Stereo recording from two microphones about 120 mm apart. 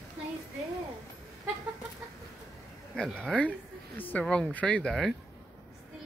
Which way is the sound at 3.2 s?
10° left (ahead or behind).